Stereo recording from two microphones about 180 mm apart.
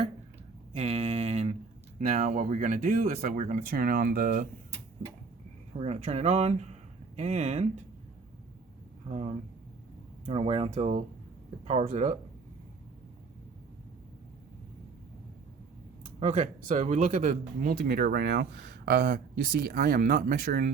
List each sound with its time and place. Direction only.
0.8 s a sound: 35° right (ahead or behind)
2.0 s speech: 50° right (ahead or behind)
5.7 s speech: 40° right (ahead or behind)
9.0 s speech: 40° right (ahead or behind)
16.2 s speech: 45° right (ahead or behind); by 19.7 s 65° right (ahead or behind)
19.7 s speech: 55° right (ahead or behind)